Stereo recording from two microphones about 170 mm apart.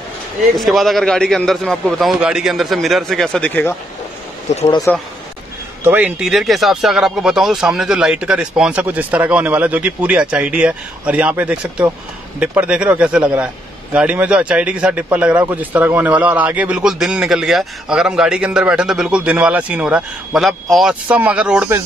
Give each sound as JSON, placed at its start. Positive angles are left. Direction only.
{"t": 0.6, "sound": "speech", "side_deg": 0}
{"t": 4.6, "sound": "speech", "side_deg": 30}
{"t": 5.9, "sound": "speech", "side_deg": -10}